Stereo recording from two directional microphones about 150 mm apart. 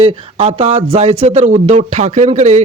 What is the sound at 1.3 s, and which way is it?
Speech, 55° right (ahead or behind).